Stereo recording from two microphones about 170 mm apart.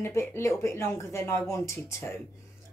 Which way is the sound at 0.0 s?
15° left (ahead or behind).